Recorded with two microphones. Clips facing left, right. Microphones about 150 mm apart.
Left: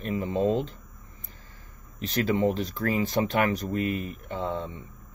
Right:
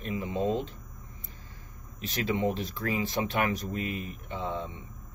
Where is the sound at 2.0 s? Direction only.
40° left (ahead or behind).